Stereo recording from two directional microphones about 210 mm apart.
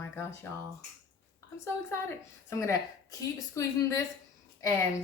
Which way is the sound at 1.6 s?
10° left (ahead or behind).